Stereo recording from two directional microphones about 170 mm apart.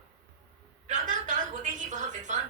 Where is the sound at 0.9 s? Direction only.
50° right (ahead or behind).